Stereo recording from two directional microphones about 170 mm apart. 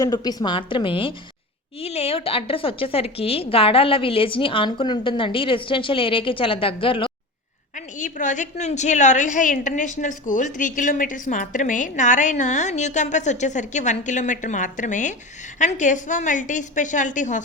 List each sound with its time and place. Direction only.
0.0 s a woman's voice: 20° left (ahead or behind)
7.8 s a woman's voice: 45° left (ahead or behind)